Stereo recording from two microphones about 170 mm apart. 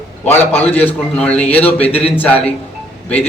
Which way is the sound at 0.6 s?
10° left (ahead or behind).